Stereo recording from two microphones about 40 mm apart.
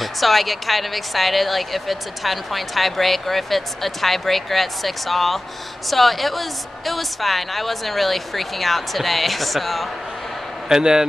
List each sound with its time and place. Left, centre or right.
0.0 s a woman's voice: centre
10.7 s a man's voice: centre